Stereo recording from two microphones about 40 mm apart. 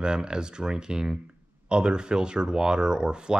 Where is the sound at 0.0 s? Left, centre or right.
Right.